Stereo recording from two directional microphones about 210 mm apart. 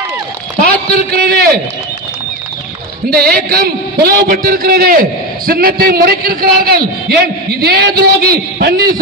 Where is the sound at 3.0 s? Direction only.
45° right (ahead or behind).